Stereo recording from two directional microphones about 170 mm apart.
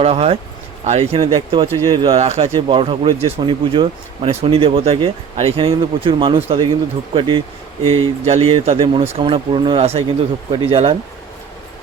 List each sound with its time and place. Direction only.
0.0 s speech: 35° right (ahead or behind)